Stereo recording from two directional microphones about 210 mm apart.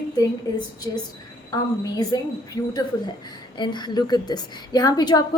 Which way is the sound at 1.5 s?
20° left (ahead or behind).